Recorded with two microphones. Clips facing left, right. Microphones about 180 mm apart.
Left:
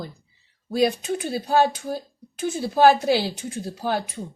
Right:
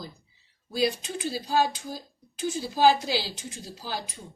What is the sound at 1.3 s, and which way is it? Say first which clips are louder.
A woman's voice: left 5 dB; 60° left (ahead or behind).